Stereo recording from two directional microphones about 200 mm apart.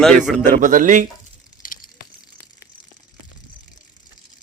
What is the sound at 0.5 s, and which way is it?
Speech, 40° right (ahead or behind).